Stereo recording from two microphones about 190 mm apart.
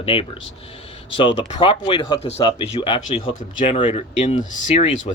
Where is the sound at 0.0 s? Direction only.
30° left (ahead or behind).